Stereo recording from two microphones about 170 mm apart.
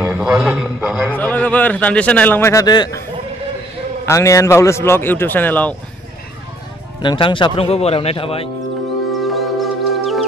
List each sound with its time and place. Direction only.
0.0 s a man's voice: 5° right (ahead or behind)
1.1 s a man's voice: 10° left (ahead or behind)
4.0 s a man's voice: 15° left (ahead or behind)
7.0 s speech: 30° left (ahead or behind)
9.2 s music: centre (ahead or behind)